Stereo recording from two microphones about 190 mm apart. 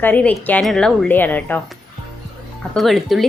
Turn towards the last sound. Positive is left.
turn(degrees=0)  # may be behind; listen again after turning